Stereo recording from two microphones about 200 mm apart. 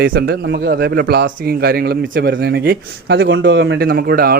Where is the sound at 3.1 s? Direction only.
70° right (ahead or behind); by 4.3 s 50° right (ahead or behind).